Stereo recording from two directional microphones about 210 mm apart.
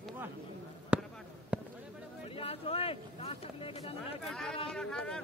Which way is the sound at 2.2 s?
25° left (ahead or behind).